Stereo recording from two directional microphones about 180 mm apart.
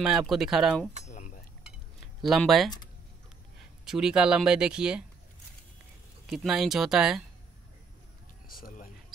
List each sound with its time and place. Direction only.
0.0 s speech: 5° right (ahead or behind)
1.0 s a sound: 45° left (ahead or behind)
2.2 s speech: centre (ahead or behind)
3.8 s speech: 5° right (ahead or behind)
6.2 s speech: centre (ahead or behind)
8.5 s a sound: 50° left (ahead or behind)